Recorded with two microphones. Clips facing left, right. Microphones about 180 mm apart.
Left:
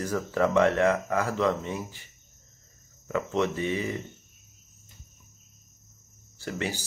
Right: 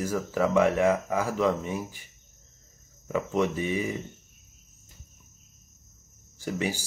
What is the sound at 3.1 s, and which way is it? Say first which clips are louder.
Speech: right 1 dB; 10° right (ahead or behind).